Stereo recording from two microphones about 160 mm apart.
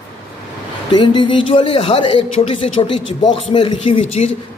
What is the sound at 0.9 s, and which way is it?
Speech, 30° left (ahead or behind).